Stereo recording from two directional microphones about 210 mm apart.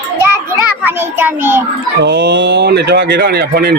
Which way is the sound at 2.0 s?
55° right (ahead or behind).